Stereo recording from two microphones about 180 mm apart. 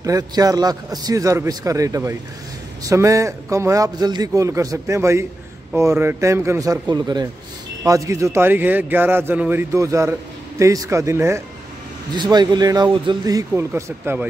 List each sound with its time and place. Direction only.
0.0 s a man's voice: 20° right (ahead or behind)